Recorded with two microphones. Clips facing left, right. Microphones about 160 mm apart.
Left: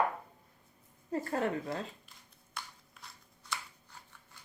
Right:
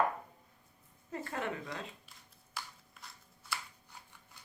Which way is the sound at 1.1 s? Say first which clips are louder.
Left 6 dB; 35° left (ahead or behind).